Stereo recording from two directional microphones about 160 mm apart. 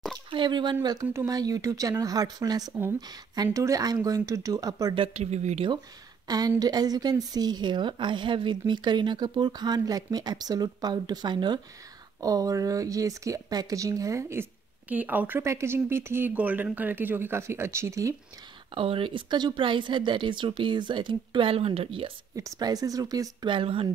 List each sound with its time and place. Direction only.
0.3 s speech: 30° right (ahead or behind)
1.0 s a woman's voice: 20° right (ahead or behind)
4.9 s speech: 35° right (ahead or behind)
6.2 s a woman's voice: 25° right (ahead or behind)
18.8 s speech: 35° right (ahead or behind)
22.3 s a woman's voice: 25° right (ahead or behind)